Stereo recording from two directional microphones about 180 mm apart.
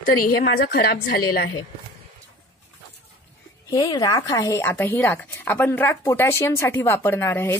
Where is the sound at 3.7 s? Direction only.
20° left (ahead or behind).